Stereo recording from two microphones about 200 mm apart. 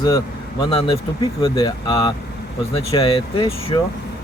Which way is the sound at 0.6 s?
25° left (ahead or behind).